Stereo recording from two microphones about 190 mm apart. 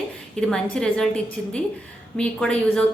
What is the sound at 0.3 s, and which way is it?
A woman's voice, 5° left (ahead or behind).